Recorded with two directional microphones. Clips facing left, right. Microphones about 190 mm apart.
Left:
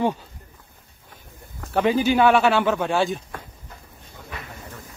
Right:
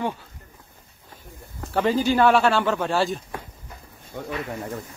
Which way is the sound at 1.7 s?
Centre (ahead or behind).